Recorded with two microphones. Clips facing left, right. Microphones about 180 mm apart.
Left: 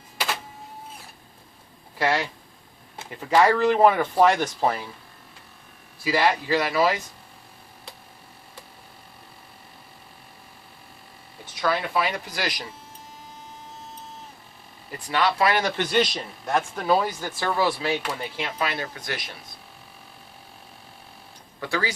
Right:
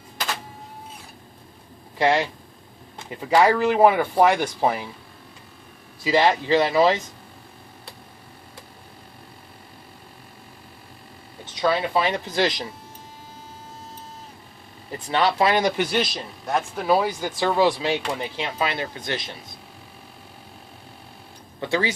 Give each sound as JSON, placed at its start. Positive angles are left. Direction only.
{"t": 2.0, "sound": "speech", "side_deg": -20}
{"t": 6.0, "sound": "speech", "side_deg": -20}
{"t": 11.4, "sound": "speech", "side_deg": -25}
{"t": 14.9, "sound": "speech", "side_deg": -25}
{"t": 21.6, "sound": "speech", "side_deg": -25}